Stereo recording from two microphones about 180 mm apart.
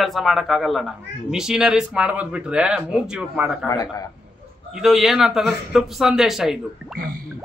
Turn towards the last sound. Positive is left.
turn(degrees=0)  # may be behind; listen again after turning